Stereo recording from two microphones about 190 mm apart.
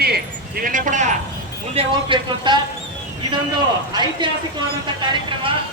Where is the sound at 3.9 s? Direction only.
25° right (ahead or behind).